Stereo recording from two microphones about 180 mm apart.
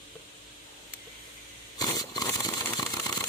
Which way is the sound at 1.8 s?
20° left (ahead or behind).